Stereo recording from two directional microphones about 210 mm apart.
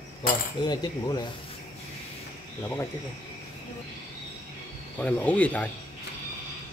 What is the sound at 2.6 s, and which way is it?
Speech, 10° left (ahead or behind).